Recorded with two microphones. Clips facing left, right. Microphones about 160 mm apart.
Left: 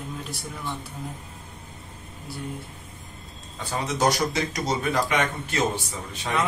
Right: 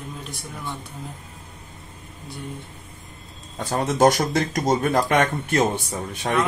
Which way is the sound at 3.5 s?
50° right (ahead or behind).